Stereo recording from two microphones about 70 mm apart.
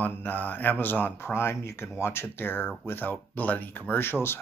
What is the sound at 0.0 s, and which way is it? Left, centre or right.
Speech, left.